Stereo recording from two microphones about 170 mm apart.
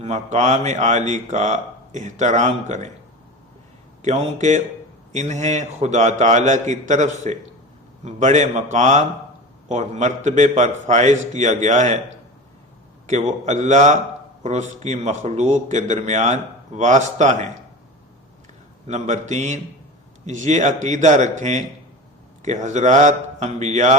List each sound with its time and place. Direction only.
0.0 s a man's voice: 40° right (ahead or behind)
4.0 s a man's voice: 40° right (ahead or behind)
13.1 s a man's voice: 40° right (ahead or behind)
18.9 s a man's voice: 40° right (ahead or behind)